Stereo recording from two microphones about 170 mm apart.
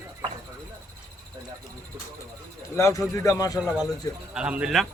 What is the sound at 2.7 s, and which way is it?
Speech, 15° left (ahead or behind).